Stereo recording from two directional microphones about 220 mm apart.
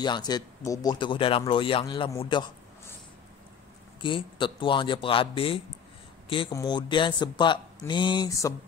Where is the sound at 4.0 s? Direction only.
20° left (ahead or behind).